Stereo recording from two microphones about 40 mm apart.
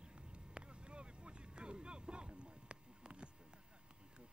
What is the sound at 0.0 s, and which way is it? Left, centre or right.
Vehicle, right.